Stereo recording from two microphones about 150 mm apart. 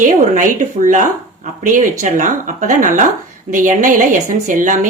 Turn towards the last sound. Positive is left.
turn(degrees=-60)  # may be behind; listen again after turning